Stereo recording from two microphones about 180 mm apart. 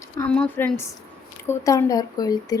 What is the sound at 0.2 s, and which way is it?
Speech, 5° left (ahead or behind).